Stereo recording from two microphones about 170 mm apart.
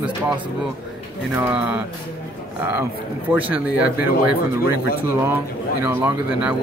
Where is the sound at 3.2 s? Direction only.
10° right (ahead or behind).